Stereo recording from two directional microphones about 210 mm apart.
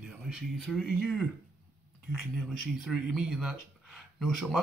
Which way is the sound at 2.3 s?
Centre (ahead or behind).